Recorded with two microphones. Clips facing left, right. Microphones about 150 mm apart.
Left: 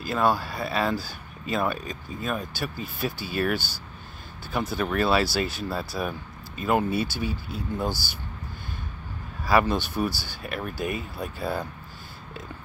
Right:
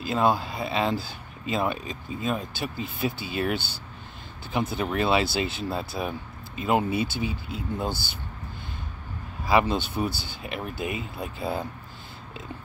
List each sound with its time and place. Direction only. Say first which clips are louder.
0.0 s speech: right 1 dB; 20° right (ahead or behind)
9.5 s speech: even; 20° right (ahead or behind)